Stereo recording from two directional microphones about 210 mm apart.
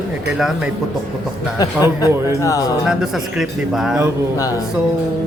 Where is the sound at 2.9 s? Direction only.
Centre (ahead or behind).